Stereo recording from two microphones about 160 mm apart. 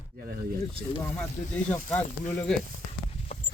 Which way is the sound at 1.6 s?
10° left (ahead or behind).